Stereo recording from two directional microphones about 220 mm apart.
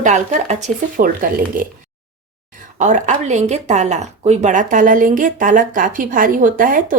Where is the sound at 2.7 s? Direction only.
30° right (ahead or behind).